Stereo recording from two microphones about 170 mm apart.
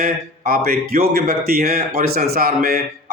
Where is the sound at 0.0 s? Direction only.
60° right (ahead or behind).